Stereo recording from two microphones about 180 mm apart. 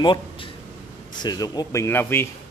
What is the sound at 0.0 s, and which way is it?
Speech, 25° left (ahead or behind).